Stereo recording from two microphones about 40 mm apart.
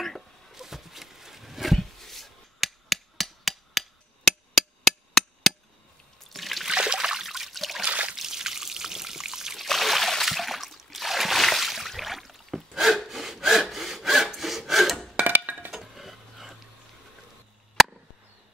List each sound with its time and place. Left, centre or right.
0.0 s a sound: centre
0.6 s a sound: centre
4.6 s chop: centre
6.2 s trickle: centre
6.7 s trickle: right
7.2 s trickle: centre
7.8 s a sound: right
8.2 s trickle: centre
9.6 s a sound: centre
11.4 s wood: centre
15.2 s music: right
15.7 s dishes: centre
17.8 s chop: centre